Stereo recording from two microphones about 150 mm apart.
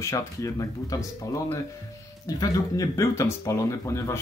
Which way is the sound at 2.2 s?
25° left (ahead or behind).